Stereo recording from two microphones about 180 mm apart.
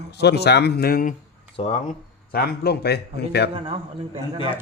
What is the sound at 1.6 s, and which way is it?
Speech, 30° left (ahead or behind).